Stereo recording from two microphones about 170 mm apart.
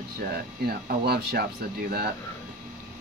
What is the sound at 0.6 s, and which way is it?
Speech, 70° right (ahead or behind).